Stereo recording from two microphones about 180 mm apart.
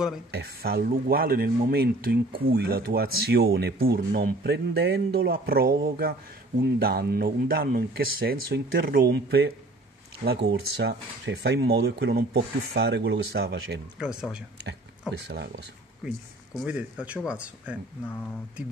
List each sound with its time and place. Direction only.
0.3 s speech: 60° right (ahead or behind)
13.9 s speech: 5° right (ahead or behind)
16.5 s speech: 5° right (ahead or behind)